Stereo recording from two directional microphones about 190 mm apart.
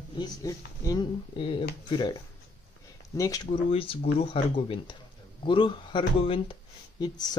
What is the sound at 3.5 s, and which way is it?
Speech, 30° left (ahead or behind).